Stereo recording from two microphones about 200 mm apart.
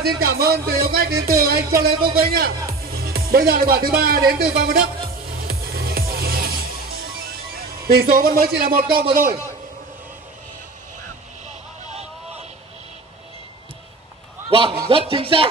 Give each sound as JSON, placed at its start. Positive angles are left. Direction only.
{"t": 0.2, "sound": "music", "side_deg": -50}
{"t": 2.8, "sound": "speech", "side_deg": -50}
{"t": 5.3, "sound": "music", "side_deg": -50}
{"t": 7.5, "sound": "speech", "side_deg": -50}
{"t": 8.8, "sound": "speech", "side_deg": -25}
{"t": 11.4, "sound": "vehicle", "side_deg": -30}
{"t": 14.5, "sound": "a man's voice", "side_deg": -25}